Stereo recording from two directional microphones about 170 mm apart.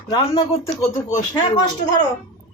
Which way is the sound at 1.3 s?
25° left (ahead or behind).